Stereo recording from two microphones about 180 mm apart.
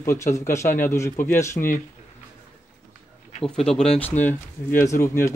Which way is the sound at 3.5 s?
5° left (ahead or behind).